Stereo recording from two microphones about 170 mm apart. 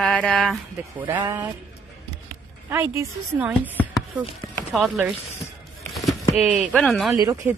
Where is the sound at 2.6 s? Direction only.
15° right (ahead or behind).